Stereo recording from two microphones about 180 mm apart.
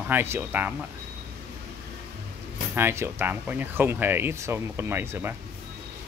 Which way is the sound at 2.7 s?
15° right (ahead or behind).